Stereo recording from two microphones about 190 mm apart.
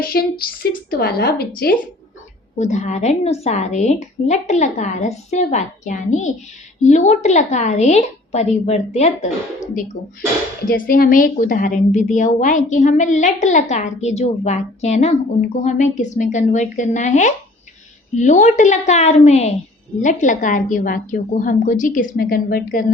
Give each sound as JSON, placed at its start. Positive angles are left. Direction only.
{"t": 0.0, "sound": "a woman's voice", "side_deg": 50}
{"t": 2.6, "sound": "a woman's voice", "side_deg": 40}
{"t": 10.7, "sound": "a woman's voice", "side_deg": 50}